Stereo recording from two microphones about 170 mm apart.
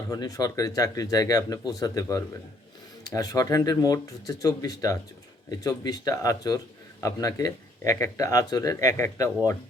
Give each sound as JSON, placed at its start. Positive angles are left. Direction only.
{"t": 0.1, "sound": "speech", "side_deg": 20}